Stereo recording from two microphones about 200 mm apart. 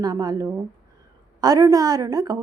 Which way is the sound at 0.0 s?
20° right (ahead or behind).